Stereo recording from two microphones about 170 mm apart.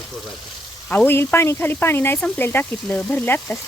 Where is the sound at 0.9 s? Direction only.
10° left (ahead or behind).